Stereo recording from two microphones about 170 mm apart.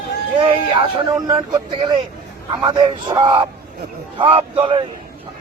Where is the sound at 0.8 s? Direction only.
25° right (ahead or behind).